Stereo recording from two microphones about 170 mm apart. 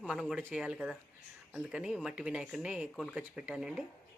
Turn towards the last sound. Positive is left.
turn(degrees=-5)  # may be behind; listen again after turning